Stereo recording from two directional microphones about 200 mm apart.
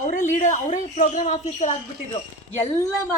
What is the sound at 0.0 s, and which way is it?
A woman's voice, 40° left (ahead or behind).